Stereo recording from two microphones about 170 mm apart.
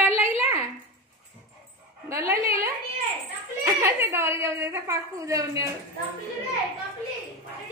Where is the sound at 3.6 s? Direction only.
15° right (ahead or behind).